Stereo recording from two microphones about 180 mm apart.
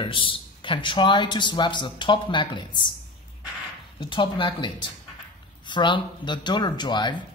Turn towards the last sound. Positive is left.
turn(degrees=25)  # may be behind; listen again after turning